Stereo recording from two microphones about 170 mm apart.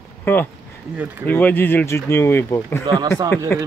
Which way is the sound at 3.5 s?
15° left (ahead or behind).